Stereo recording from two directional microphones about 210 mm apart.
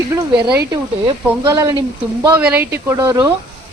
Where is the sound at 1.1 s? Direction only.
20° right (ahead or behind).